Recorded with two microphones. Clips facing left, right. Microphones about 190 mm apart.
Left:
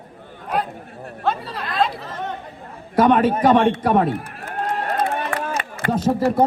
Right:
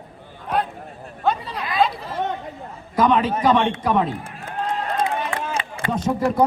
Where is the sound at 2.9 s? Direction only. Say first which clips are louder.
Left 3 dB; 55° left (ahead or behind).